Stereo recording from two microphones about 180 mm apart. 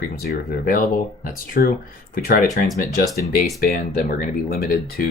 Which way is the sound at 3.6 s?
60° left (ahead or behind).